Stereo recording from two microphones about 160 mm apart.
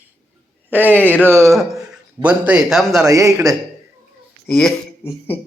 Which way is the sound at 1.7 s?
5° right (ahead or behind).